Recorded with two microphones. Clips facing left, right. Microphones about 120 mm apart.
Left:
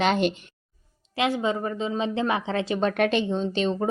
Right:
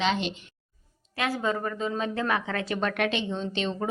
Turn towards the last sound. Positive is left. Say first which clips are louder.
# left 5 dB
turn(degrees=40)  # may be behind; listen again after turning